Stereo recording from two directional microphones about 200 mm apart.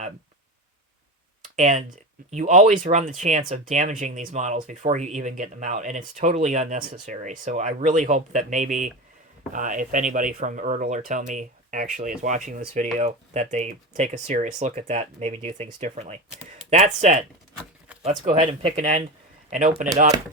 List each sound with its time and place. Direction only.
1.5 s speech: 40° right (ahead or behind)
18.6 s speech: 30° right (ahead or behind)